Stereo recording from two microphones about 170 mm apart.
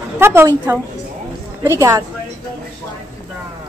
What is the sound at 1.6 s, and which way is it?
Speech, 15° right (ahead or behind).